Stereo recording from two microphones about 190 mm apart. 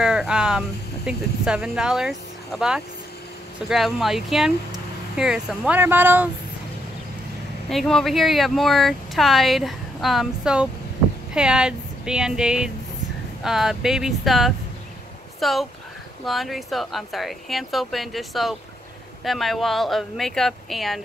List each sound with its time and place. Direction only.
0.0 s speech: 5° right (ahead or behind)
7.7 s speech: centre (ahead or behind)